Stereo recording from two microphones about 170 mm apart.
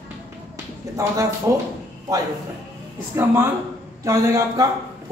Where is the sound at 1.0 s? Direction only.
20° right (ahead or behind).